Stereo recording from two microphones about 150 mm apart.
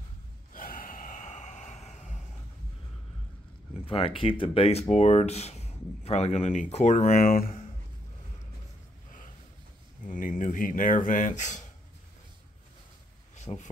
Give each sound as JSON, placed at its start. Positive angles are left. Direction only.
{"t": 0.5, "sound": "gasp", "side_deg": 70}
{"t": 3.7, "sound": "speech", "side_deg": 40}
{"t": 7.2, "sound": "speech", "side_deg": 75}
{"t": 10.0, "sound": "speech", "side_deg": 60}
{"t": 13.5, "sound": "speech", "side_deg": 25}